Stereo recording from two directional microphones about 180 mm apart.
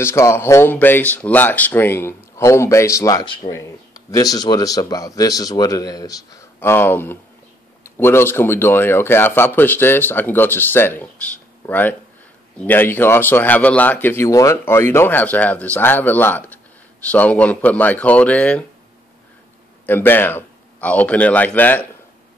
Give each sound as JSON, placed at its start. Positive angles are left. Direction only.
{"t": 0.0, "sound": "speech", "side_deg": 15}
{"t": 19.9, "sound": "speech", "side_deg": 10}